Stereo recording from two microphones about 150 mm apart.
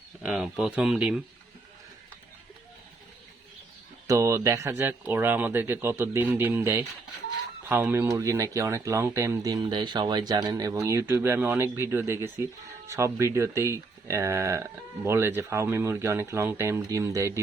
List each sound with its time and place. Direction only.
0.2 s speech: 5° right (ahead or behind)
4.0 s speech: 20° right (ahead or behind)